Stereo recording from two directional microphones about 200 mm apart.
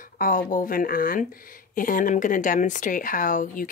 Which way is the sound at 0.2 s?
45° left (ahead or behind).